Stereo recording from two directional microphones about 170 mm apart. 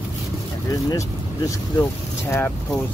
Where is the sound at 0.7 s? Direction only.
20° left (ahead or behind).